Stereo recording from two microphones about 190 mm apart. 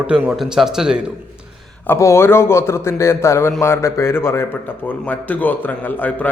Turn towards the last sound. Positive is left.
turn(degrees=10)  # may be behind; listen again after turning